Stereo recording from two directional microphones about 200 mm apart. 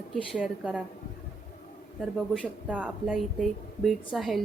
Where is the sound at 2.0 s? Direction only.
5° left (ahead or behind).